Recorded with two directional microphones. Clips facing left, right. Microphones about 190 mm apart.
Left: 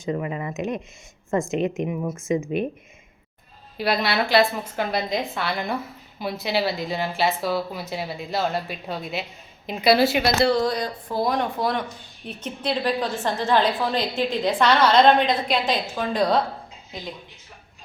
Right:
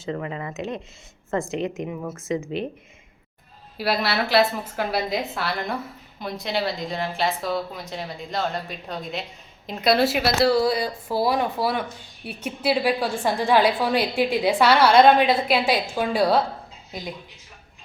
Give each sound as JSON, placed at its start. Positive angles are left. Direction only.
{"t": 0.0, "sound": "a woman's voice", "side_deg": 15}
{"t": 3.8, "sound": "a woman's voice", "side_deg": -5}